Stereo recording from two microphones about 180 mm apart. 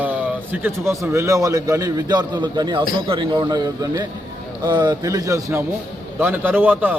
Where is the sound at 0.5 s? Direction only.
10° right (ahead or behind).